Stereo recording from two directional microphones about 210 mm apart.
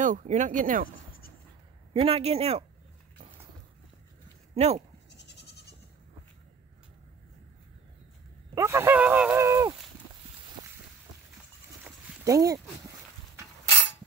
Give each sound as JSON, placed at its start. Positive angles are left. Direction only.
{"t": 0.0, "sound": "speech", "side_deg": -35}
{"t": 2.0, "sound": "speech", "side_deg": -25}
{"t": 4.6, "sound": "speech", "side_deg": -30}
{"t": 5.1, "sound": "goat", "side_deg": 55}
{"t": 8.5, "sound": "speech", "side_deg": -15}
{"t": 11.8, "sound": "a sound", "side_deg": -15}